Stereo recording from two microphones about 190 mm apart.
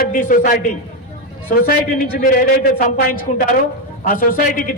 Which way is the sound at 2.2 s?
50° left (ahead or behind).